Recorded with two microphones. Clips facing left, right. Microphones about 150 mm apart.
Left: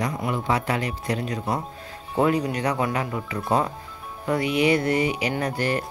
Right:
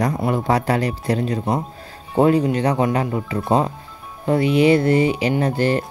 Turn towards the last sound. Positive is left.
turn(degrees=-30)  # may be behind; listen again after turning